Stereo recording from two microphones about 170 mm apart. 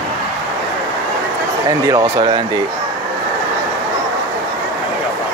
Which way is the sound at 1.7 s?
20° right (ahead or behind).